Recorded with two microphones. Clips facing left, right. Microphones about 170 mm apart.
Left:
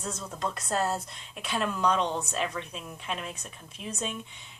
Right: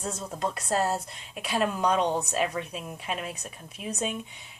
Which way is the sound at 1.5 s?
40° right (ahead or behind).